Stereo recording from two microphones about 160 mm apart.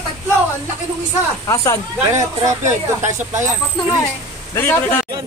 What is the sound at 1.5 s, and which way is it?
Speech, 20° left (ahead or behind).